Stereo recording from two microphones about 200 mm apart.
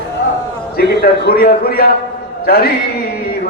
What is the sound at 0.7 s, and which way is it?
A man's voice, 55° left (ahead or behind).